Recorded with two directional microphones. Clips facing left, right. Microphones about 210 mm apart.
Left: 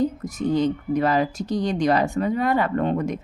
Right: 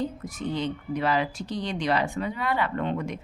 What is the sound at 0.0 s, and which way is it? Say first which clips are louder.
Speech: left 7 dB; 45° left (ahead or behind).